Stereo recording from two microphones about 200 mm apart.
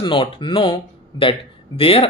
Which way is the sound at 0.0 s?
25° left (ahead or behind).